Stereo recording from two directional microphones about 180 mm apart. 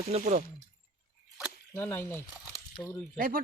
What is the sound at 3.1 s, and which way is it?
Speech, 50° right (ahead or behind).